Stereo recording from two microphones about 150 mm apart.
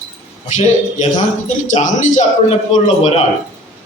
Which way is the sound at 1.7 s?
50° left (ahead or behind).